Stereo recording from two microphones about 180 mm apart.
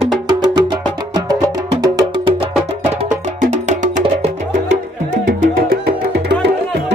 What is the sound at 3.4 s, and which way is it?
Music, 45° right (ahead or behind).